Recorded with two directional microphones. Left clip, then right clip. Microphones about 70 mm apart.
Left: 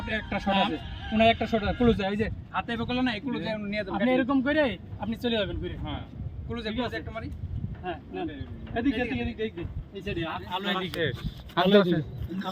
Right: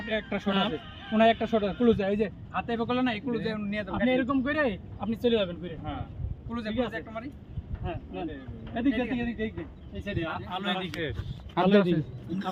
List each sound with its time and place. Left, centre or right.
0.1 s speech: centre
0.4 s speech: right
1.1 s speech: centre; by 10.6 s right
10.6 s speech: centre
11.8 s a man's voice: centre